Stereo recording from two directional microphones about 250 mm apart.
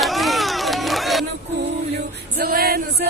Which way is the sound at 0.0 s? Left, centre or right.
Centre.